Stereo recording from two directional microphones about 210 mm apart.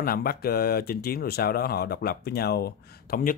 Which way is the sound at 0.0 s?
45° left (ahead or behind).